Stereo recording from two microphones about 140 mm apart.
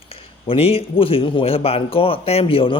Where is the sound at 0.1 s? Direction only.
40° left (ahead or behind).